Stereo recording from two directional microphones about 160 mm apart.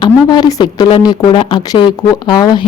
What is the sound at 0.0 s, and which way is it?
Speech, 25° left (ahead or behind).